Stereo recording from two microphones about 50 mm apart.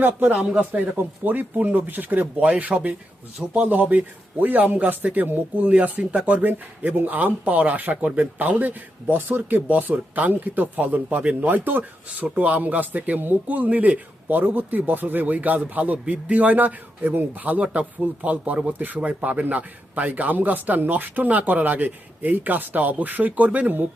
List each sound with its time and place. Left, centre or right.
0.0 s a man's voice: right
0.3 s a man's voice: right
2.4 s a man's voice: right